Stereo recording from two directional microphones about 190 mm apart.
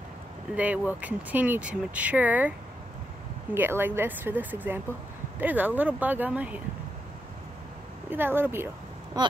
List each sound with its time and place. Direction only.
0.6 s speech: 10° right (ahead or behind)
3.5 s speech: 10° right (ahead or behind)
8.1 s speech: 10° right (ahead or behind)
9.1 s a sound: 20° right (ahead or behind)